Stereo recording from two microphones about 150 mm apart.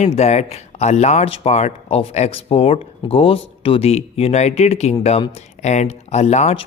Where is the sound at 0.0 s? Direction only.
45° left (ahead or behind).